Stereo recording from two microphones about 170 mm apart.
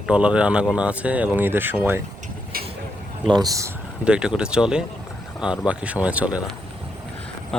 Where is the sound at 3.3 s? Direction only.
20° right (ahead or behind).